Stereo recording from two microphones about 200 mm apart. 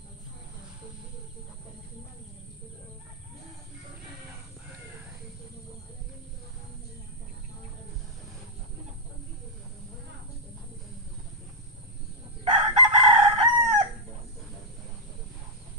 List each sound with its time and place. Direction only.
12.4 s chicken: 30° right (ahead or behind)